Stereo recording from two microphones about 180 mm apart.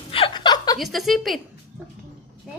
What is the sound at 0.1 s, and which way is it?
Chuckle, 30° left (ahead or behind).